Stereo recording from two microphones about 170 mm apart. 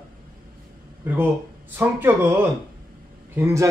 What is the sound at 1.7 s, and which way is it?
Speech, 10° right (ahead or behind).